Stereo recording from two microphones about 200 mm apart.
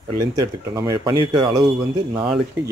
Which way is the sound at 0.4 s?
20° right (ahead or behind).